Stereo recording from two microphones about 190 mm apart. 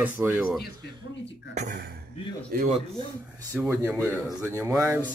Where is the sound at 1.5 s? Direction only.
40° right (ahead or behind).